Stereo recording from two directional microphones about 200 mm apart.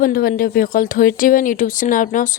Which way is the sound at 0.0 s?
45° left (ahead or behind).